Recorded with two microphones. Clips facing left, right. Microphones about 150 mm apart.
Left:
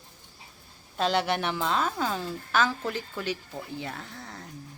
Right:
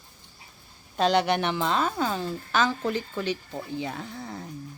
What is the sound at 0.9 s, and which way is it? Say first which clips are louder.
A woman's voice: right 4 dB; centre (ahead or behind).